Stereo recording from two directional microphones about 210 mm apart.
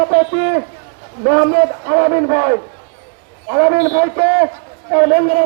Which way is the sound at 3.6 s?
40° right (ahead or behind).